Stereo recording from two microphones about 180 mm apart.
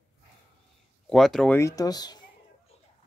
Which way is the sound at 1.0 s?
Centre (ahead or behind).